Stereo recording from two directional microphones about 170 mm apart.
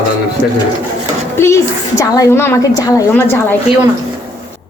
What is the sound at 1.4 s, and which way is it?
A woman's voice, 15° left (ahead or behind).